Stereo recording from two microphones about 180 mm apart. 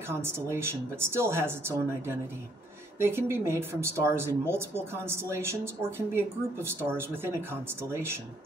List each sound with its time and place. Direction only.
0.1 s speech: 15° right (ahead or behind)